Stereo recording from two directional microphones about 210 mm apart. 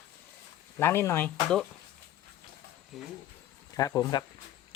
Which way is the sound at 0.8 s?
10° left (ahead or behind).